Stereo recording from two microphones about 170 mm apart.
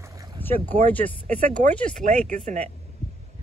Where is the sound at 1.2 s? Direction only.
45° right (ahead or behind).